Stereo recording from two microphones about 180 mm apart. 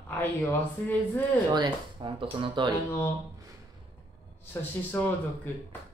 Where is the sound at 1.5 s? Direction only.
25° right (ahead or behind).